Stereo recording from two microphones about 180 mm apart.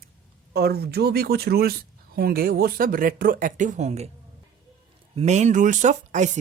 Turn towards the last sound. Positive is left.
turn(degrees=-40)  # may be behind; listen again after turning